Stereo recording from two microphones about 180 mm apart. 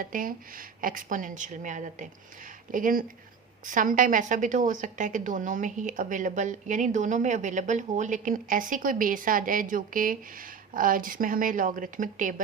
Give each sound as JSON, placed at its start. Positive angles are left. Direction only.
{"t": 0.0, "sound": "a woman's voice", "side_deg": -50}